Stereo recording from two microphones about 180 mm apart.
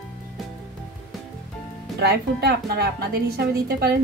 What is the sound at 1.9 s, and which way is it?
A woman's voice, 65° right (ahead or behind).